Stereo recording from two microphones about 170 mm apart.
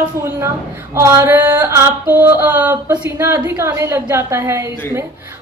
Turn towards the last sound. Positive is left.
turn(degrees=-15)  # may be behind; listen again after turning